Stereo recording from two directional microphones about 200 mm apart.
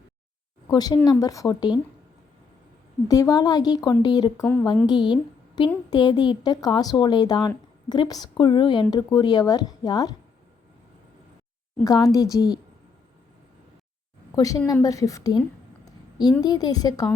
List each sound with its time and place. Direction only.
0.7 s a woman's voice: 20° left (ahead or behind)
3.1 s a woman's voice: 15° left (ahead or behind)
11.8 s speech: 15° left (ahead or behind)
14.3 s speech: 15° left (ahead or behind)
16.4 s a woman's voice: 20° left (ahead or behind)